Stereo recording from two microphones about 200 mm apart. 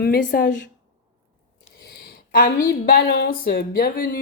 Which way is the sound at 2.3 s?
50° left (ahead or behind).